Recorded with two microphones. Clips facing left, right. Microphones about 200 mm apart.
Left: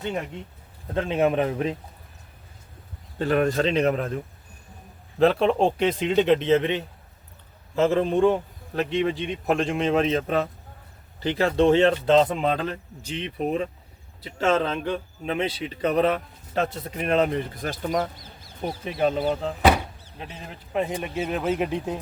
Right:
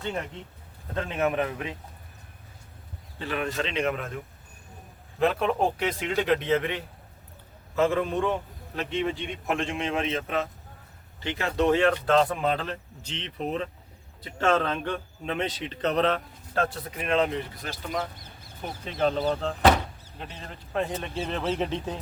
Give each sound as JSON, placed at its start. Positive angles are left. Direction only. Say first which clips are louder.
{"t": 0.9, "sound": "speech", "louder": "left 5 dB", "side_deg": 30}
{"t": 3.2, "sound": "a man's voice", "louder": "left 8 dB", "side_deg": 45}
{"t": 5.2, "sound": "a man's voice", "louder": "left 5 dB", "side_deg": 30}
{"t": 17.0, "sound": "speech", "louder": "left 3 dB", "side_deg": 45}
{"t": 18.9, "sound": "speech", "louder": "left 2 dB", "side_deg": 10}